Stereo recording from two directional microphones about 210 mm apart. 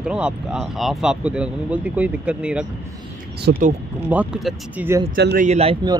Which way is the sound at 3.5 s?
50° right (ahead or behind).